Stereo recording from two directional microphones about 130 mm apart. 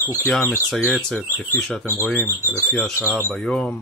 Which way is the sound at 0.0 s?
20° left (ahead or behind).